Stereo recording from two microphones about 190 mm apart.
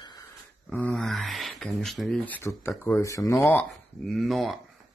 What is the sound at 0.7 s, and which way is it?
Speech, 5° left (ahead or behind).